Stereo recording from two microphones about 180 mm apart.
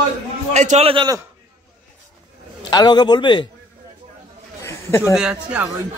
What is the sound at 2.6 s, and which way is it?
Speech, 25° left (ahead or behind).